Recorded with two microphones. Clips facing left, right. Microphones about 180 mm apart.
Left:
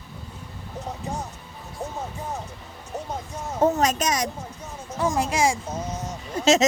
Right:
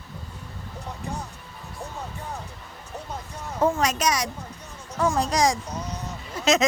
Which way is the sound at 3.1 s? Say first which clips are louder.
Left 1 dB; 45° left (ahead or behind).